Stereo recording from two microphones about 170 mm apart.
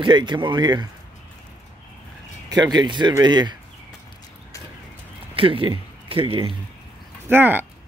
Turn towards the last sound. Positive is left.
turn(degrees=-10)  # may be behind; listen again after turning